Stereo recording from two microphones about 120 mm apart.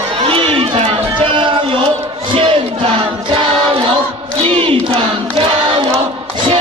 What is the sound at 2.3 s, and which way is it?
Choir, 50° right (ahead or behind).